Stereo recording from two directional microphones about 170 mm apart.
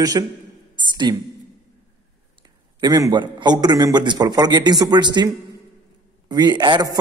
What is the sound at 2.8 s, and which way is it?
A man's voice, 25° right (ahead or behind).